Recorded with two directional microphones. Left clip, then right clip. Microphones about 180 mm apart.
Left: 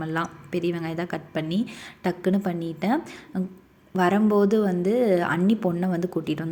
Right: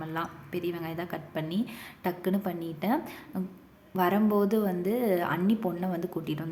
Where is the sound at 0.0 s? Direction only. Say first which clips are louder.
Left 6 dB; 25° left (ahead or behind).